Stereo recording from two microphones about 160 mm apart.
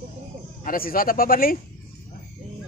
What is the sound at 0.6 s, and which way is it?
Speech, 65° left (ahead or behind).